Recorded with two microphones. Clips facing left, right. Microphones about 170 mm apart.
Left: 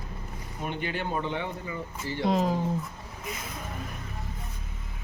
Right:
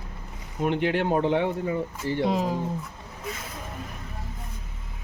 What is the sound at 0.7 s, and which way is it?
Speech, 85° right.